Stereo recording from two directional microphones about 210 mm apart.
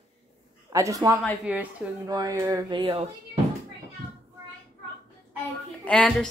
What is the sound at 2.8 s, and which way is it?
Speech, 25° right (ahead or behind).